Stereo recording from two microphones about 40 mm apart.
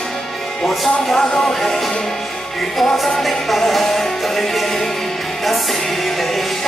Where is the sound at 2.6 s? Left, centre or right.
Centre.